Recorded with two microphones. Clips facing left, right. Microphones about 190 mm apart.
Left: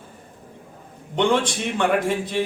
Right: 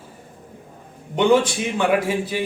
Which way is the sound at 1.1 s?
5° right (ahead or behind).